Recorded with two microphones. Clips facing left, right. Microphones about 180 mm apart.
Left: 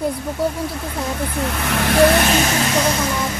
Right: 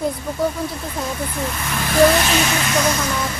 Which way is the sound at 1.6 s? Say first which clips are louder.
Left 4 dB; 70° left (ahead or behind).